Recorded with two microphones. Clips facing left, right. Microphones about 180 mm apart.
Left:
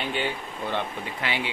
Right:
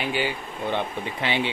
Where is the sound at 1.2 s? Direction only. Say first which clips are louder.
Right 4 dB; 25° right (ahead or behind).